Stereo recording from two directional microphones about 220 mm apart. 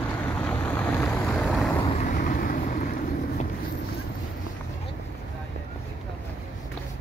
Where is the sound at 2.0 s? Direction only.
35° left (ahead or behind).